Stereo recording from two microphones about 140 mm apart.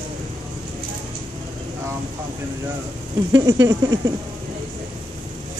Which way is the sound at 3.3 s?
25° right (ahead or behind).